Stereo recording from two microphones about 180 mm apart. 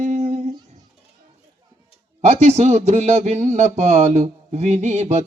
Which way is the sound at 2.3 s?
40° right (ahead or behind).